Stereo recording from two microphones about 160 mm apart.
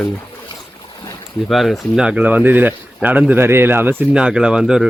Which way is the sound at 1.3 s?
Centre (ahead or behind).